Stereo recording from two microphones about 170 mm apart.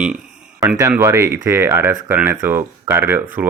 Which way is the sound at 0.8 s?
15° right (ahead or behind).